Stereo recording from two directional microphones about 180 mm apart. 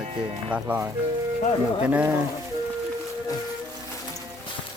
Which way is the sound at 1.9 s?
10° right (ahead or behind).